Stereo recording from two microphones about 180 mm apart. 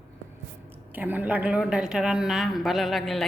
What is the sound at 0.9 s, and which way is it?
A woman's voice, 10° right (ahead or behind).